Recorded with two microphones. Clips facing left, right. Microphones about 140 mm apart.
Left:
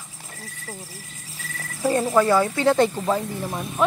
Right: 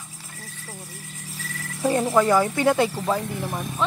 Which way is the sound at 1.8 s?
15° right (ahead or behind).